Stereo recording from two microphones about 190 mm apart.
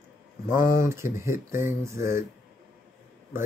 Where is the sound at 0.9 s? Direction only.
15° right (ahead or behind).